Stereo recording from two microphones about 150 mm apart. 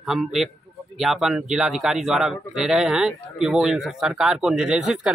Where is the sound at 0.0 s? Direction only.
Centre (ahead or behind).